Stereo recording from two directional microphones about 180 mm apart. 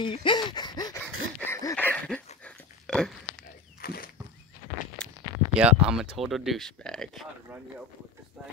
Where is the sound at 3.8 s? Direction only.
55° left (ahead or behind).